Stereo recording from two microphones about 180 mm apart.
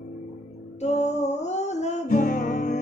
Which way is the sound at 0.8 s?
40° left (ahead or behind).